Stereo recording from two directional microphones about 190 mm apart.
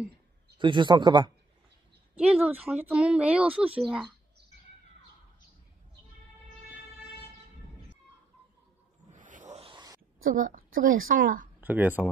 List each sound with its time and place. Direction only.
0.6 s speech: 25° right (ahead or behind)
2.1 s speech: 5° right (ahead or behind)
9.1 s a sound: 45° right (ahead or behind); by 9.9 s 25° right (ahead or behind)
10.2 s a woman's voice: 45° right (ahead or behind)
11.6 s speech: 10° right (ahead or behind)